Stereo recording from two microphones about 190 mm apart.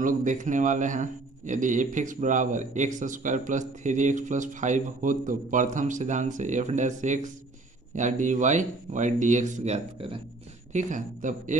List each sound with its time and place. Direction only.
0.0 s a man's voice: 45° right (ahead or behind)